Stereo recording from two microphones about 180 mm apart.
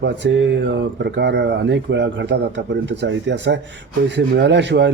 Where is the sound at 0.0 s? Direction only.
85° right.